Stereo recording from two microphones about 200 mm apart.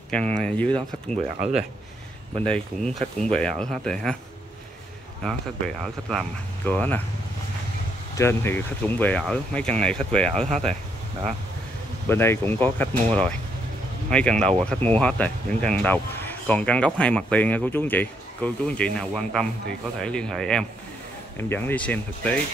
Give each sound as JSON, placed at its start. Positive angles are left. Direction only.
{"t": 0.1, "sound": "speech", "side_deg": 5}
{"t": 1.4, "sound": "speech", "side_deg": -35}
{"t": 2.4, "sound": "speech", "side_deg": 5}
{"t": 5.2, "sound": "speech", "side_deg": 5}
{"t": 8.2, "sound": "speech", "side_deg": 10}
{"t": 12.1, "sound": "speech", "side_deg": 10}